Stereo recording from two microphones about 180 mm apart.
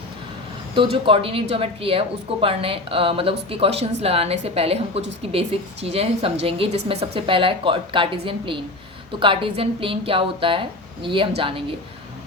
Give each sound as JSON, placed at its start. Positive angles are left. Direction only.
{"t": 0.8, "sound": "a woman's voice", "side_deg": -30}